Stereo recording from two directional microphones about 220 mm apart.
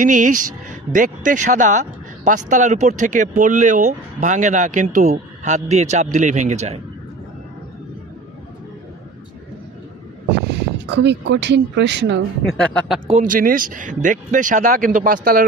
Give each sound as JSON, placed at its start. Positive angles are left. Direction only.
{"t": 0.0, "sound": "speech", "side_deg": -35}
{"t": 10.9, "sound": "speech", "side_deg": -50}
{"t": 12.4, "sound": "speech", "side_deg": 5}
{"t": 13.0, "sound": "speech", "side_deg": -35}